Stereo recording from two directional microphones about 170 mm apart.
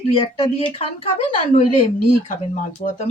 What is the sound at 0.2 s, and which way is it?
Speech, 30° left (ahead or behind).